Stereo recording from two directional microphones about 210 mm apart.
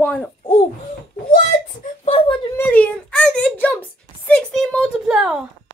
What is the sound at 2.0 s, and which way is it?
Whimper, 25° left (ahead or behind).